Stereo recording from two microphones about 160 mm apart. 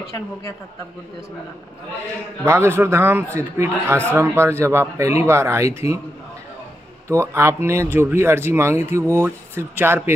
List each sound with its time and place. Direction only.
2.4 s speech: 15° right (ahead or behind)
7.1 s speech: 15° right (ahead or behind)